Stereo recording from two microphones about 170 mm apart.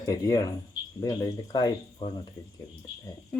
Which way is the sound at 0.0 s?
20° left (ahead or behind).